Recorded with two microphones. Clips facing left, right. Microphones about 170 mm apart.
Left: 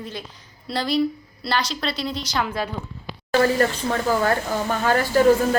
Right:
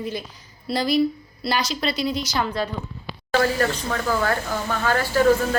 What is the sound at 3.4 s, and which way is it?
Speech, 20° left (ahead or behind).